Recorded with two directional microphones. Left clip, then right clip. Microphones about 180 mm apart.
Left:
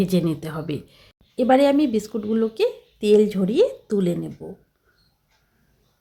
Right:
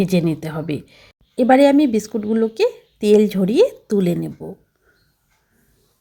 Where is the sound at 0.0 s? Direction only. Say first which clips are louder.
Right 3 dB; 15° right (ahead or behind).